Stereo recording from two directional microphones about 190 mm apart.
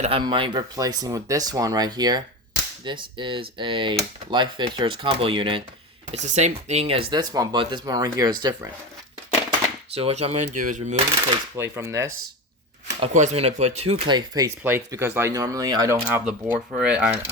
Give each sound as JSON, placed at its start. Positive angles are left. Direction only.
{"t": 0.0, "sound": "speech", "side_deg": -30}
{"t": 9.9, "sound": "speech", "side_deg": -35}
{"t": 11.5, "sound": "speech", "side_deg": -15}
{"t": 13.0, "sound": "speech", "side_deg": -35}